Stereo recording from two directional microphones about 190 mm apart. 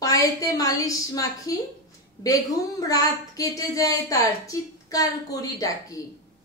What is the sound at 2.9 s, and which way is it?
A woman's voice, 20° left (ahead or behind).